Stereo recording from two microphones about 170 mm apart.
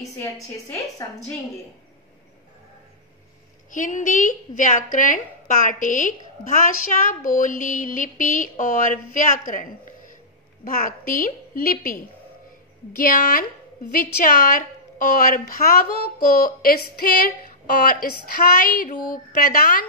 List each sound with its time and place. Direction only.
0.2 s a woman's voice: 15° left (ahead or behind)
3.7 s a woman's voice: 50° left (ahead or behind)
9.5 s a sound: 50° left (ahead or behind)
10.6 s a woman's voice: 55° left (ahead or behind)